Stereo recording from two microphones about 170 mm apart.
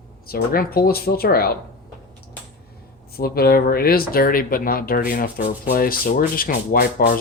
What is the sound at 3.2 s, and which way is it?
Speech, 60° left (ahead or behind).